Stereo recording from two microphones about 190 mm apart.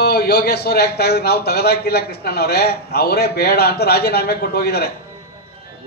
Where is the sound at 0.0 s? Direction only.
55° left (ahead or behind).